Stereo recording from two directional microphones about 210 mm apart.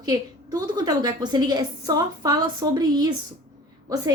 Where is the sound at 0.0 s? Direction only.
20° right (ahead or behind).